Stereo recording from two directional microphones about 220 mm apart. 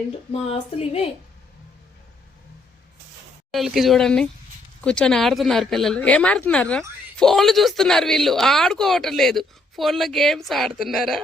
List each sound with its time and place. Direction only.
0.3 s speech: 25° left (ahead or behind)
3.5 s speech: centre (ahead or behind)